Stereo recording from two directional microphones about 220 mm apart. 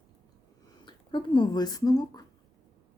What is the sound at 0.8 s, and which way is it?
Speech, 20° left (ahead or behind).